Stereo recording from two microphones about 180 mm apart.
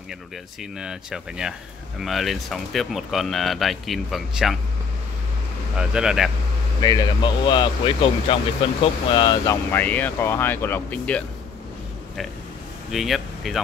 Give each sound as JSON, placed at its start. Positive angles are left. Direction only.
{"t": 0.7, "sound": "speech", "side_deg": -5}
{"t": 5.8, "sound": "speech", "side_deg": -5}
{"t": 6.8, "sound": "speech", "side_deg": 20}
{"t": 9.7, "sound": "speech", "side_deg": 10}
{"t": 12.9, "sound": "speech", "side_deg": 0}